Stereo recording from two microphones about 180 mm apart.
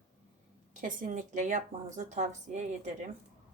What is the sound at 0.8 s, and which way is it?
A woman's voice, 45° right (ahead or behind).